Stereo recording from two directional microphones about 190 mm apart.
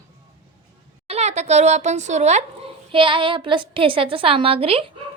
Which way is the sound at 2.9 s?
25° right (ahead or behind).